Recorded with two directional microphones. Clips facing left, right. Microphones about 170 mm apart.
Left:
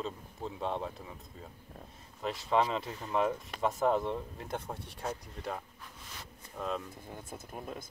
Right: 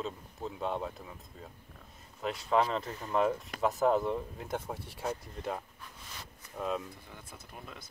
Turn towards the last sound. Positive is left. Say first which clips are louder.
# left 6 dB
turn(degrees=45)  # may be behind; listen again after turning